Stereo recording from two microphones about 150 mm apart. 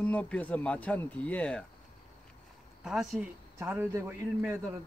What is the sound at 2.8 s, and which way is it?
Speech, 5° right (ahead or behind).